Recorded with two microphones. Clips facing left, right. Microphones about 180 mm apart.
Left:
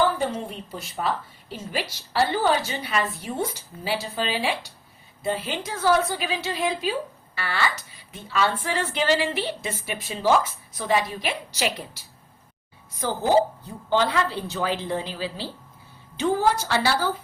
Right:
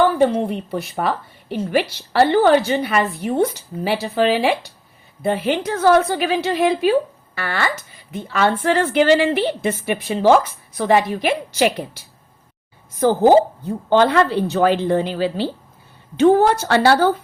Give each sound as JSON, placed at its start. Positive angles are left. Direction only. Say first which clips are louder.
{"t": 0.2, "sound": "a woman's voice", "louder": "right 11 dB", "side_deg": -65}
{"t": 13.0, "sound": "a woman's voice", "louder": "right 8 dB", "side_deg": -55}